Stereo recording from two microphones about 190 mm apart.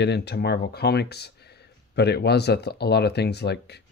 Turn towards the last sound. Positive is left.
turn(degrees=60)  # may be behind; listen again after turning